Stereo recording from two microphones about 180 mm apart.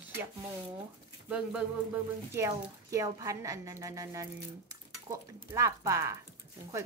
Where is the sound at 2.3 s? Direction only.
15° right (ahead or behind).